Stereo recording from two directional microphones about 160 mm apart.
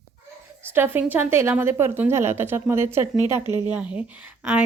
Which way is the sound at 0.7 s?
15° right (ahead or behind).